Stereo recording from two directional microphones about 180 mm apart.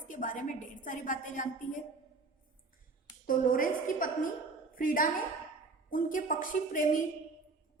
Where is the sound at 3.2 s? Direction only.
50° left (ahead or behind).